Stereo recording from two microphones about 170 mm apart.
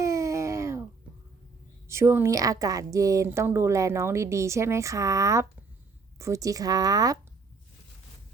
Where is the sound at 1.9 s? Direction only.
15° right (ahead or behind).